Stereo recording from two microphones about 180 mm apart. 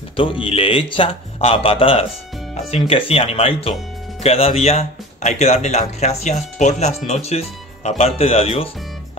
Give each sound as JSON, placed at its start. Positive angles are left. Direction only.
{"t": 0.1, "sound": "speech", "side_deg": 30}